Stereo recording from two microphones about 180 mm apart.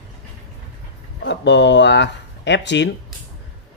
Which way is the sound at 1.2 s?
75° left (ahead or behind).